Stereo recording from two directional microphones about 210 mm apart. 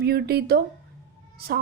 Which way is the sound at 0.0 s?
50° right (ahead or behind).